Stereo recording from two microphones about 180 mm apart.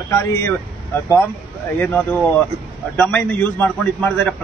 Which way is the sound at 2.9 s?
10° left (ahead or behind).